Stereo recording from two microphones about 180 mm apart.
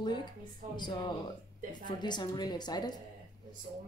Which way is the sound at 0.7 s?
25° left (ahead or behind).